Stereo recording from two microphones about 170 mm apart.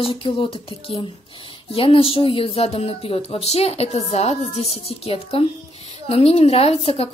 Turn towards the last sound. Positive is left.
turn(degrees=35)  # may be behind; listen again after turning